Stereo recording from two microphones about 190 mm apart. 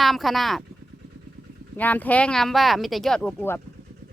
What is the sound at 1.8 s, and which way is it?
Speech, 10° left (ahead or behind).